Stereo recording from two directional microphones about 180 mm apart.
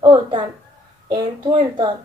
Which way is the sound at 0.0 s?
30° right (ahead or behind).